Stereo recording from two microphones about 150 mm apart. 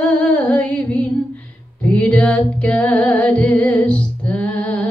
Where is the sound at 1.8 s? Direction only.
10° left (ahead or behind).